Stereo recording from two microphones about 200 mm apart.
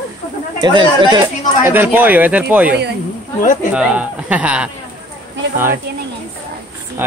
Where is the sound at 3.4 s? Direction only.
40° left (ahead or behind).